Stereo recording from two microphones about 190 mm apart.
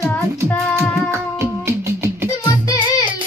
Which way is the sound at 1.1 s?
15° right (ahead or behind).